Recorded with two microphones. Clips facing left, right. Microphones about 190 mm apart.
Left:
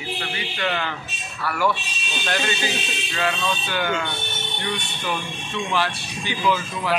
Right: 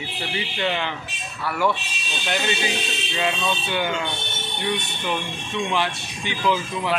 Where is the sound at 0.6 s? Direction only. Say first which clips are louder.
Even; 20° right (ahead or behind).